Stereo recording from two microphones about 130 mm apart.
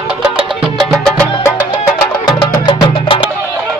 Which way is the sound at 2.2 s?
35° left (ahead or behind).